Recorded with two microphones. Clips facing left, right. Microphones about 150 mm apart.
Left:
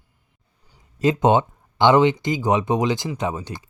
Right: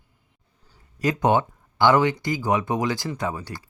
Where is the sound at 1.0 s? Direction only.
25° left (ahead or behind).